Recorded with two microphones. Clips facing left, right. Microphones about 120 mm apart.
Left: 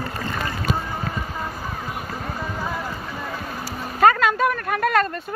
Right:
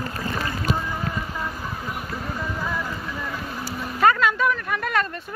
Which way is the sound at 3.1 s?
25° left (ahead or behind).